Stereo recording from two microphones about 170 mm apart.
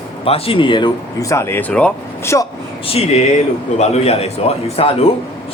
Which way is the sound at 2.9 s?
35° left (ahead or behind).